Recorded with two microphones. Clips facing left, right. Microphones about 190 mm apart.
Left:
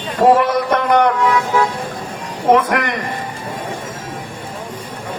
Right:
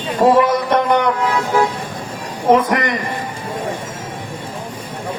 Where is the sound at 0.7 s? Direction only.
55° left (ahead or behind).